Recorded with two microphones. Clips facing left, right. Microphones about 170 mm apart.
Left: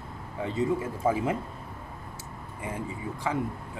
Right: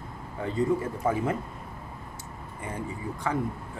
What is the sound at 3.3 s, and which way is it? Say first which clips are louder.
Speech: right 1 dB; 10° left (ahead or behind).